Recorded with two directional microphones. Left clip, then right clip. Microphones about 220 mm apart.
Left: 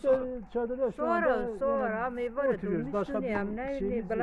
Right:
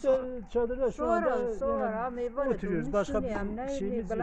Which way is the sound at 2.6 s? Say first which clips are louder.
Right 2 dB; 55° right (ahead or behind).